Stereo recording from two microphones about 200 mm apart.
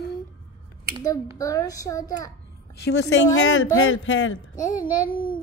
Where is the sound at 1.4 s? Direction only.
15° left (ahead or behind).